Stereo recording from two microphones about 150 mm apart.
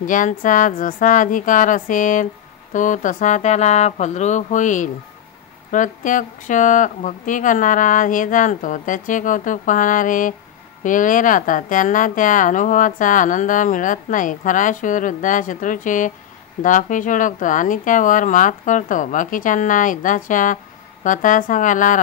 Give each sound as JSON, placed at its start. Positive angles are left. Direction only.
{"t": 0.0, "sound": "speech", "side_deg": 60}